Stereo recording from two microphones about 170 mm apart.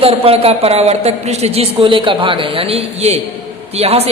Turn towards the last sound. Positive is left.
turn(degrees=-35)  # may be behind; listen again after turning